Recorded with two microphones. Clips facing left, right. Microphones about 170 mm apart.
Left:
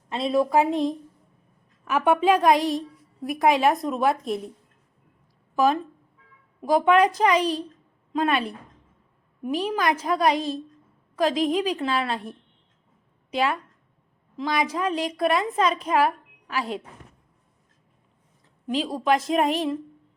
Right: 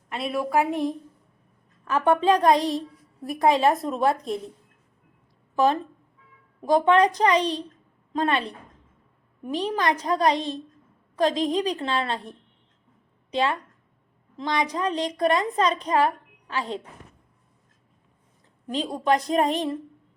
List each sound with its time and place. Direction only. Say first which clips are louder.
0.1 s a woman's voice: left 4 dB; 25° left (ahead or behind); by 4.2 s centre (ahead or behind)
6.6 s a woman's voice: even; 5° left (ahead or behind)
18.7 s a woman's voice: left 1 dB; centre (ahead or behind)